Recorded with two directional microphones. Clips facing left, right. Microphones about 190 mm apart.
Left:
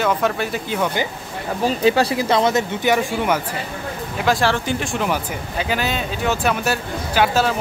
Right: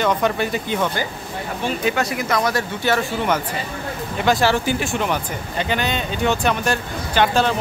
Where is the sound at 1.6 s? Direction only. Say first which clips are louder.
Left 5 dB; 30° left (ahead or behind); by 3.4 s 10° left (ahead or behind).